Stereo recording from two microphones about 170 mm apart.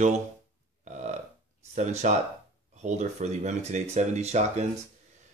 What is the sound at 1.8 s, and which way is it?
Speech, 45° right (ahead or behind).